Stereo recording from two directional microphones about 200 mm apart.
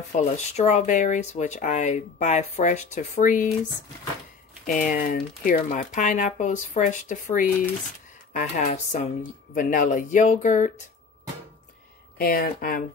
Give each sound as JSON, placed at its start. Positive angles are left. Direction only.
{"t": 0.1, "sound": "speech", "side_deg": 35}
{"t": 4.6, "sound": "speech", "side_deg": 45}
{"t": 12.2, "sound": "speech", "side_deg": 45}